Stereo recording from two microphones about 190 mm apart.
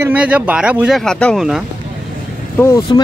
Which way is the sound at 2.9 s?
20° left (ahead or behind).